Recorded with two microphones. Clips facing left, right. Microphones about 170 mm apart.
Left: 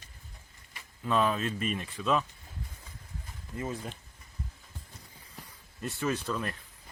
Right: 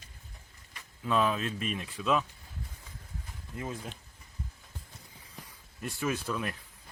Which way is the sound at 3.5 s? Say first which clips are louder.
Left 2 dB; centre (ahead or behind).